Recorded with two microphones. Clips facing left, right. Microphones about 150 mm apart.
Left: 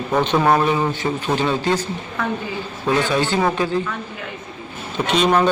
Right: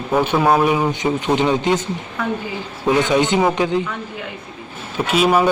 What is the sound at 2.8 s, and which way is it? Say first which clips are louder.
Speech: right 3 dB; 20° right (ahead or behind).